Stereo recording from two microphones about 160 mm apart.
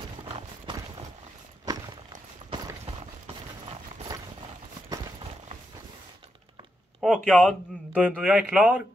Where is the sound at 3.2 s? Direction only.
40° right (ahead or behind).